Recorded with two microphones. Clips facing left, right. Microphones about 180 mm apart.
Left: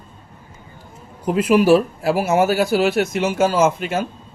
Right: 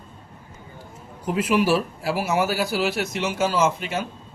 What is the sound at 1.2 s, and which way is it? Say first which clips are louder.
Speech: left 6 dB; 45° left (ahead or behind).